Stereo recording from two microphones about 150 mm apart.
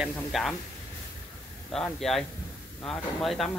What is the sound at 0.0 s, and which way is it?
Speech, centre (ahead or behind).